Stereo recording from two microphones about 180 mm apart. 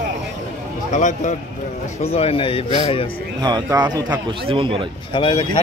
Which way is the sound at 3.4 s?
25° right (ahead or behind).